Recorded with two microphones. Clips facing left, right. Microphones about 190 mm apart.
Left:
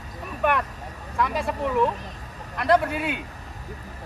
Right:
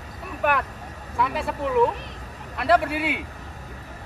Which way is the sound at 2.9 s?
80° right.